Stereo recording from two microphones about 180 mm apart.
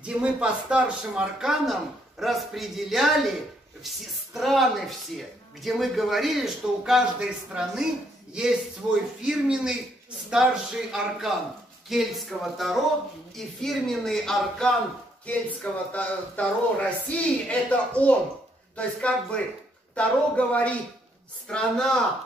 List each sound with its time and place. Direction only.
0.0 s speech: 5° right (ahead or behind)
9.2 s speech: 5° right (ahead or behind)